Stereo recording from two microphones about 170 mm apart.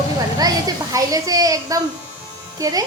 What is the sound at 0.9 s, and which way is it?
Speech, 20° right (ahead or behind).